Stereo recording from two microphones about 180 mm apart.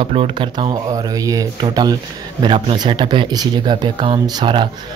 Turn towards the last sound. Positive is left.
turn(degrees=-25)  # may be behind; listen again after turning